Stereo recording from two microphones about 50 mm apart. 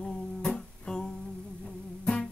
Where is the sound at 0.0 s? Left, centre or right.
Centre.